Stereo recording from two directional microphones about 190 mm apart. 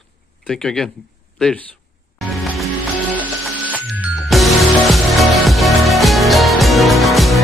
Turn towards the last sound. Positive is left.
turn(degrees=0)  # may be behind; listen again after turning